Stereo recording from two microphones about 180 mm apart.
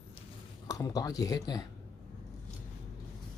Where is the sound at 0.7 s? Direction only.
20° left (ahead or behind).